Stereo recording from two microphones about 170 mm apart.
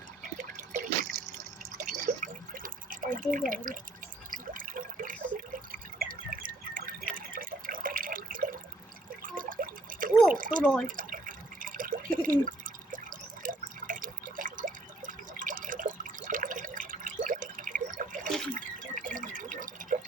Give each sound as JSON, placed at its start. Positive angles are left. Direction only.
{"t": 0.2, "sound": "drip", "side_deg": -45}
{"t": 4.3, "sound": "water", "side_deg": -55}
{"t": 5.7, "sound": "drip", "side_deg": -55}
{"t": 9.2, "sound": "water", "side_deg": -55}
{"t": 10.3, "sound": "a sound", "side_deg": -55}
{"t": 10.6, "sound": "speech", "side_deg": 5}
{"t": 10.8, "sound": "drip", "side_deg": -55}
{"t": 18.3, "sound": "water", "side_deg": 0}
{"t": 18.5, "sound": "drip", "side_deg": -50}